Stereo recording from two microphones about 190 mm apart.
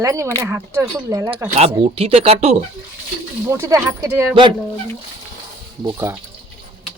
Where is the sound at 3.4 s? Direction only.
15° right (ahead or behind).